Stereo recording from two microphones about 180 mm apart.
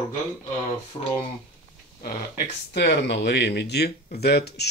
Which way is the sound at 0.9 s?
25° left (ahead or behind).